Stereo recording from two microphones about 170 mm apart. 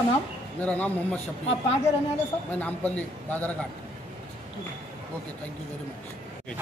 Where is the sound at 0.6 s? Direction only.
10° left (ahead or behind).